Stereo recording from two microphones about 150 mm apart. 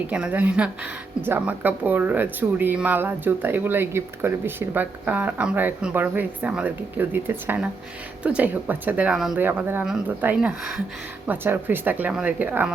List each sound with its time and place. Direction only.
0.1 s speech: 10° right (ahead or behind)
9.4 s speech: 15° right (ahead or behind)